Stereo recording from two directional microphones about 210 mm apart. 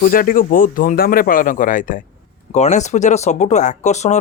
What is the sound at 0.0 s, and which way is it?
Speech, 40° left (ahead or behind).